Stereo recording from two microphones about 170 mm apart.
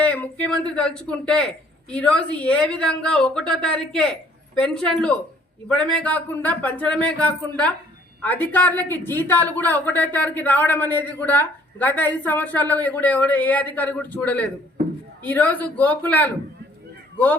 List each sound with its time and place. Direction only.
0.0 s a woman's voice: 10° left (ahead or behind)